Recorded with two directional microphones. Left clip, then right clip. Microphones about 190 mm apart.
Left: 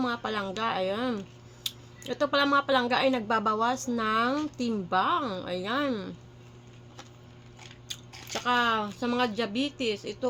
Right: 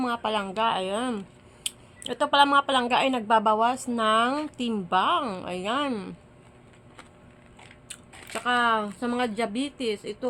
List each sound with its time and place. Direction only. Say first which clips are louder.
0.0 s a woman's voice: right 3 dB; 20° right (ahead or behind)
7.9 s speech: left 3 dB; 15° right (ahead or behind)